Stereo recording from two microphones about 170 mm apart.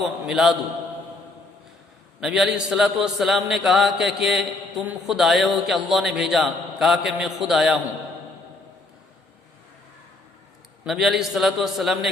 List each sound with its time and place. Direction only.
0.0 s a man's voice: centre (ahead or behind)
2.2 s a man's voice: centre (ahead or behind)
10.8 s a man's voice: centre (ahead or behind)